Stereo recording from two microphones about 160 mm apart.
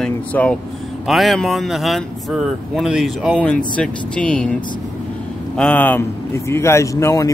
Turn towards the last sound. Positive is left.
turn(degrees=20)  # may be behind; listen again after turning